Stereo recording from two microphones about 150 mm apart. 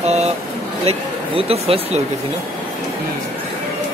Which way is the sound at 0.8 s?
40° right (ahead or behind).